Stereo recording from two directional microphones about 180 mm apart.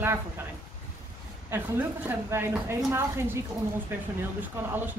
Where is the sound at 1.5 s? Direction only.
10° right (ahead or behind).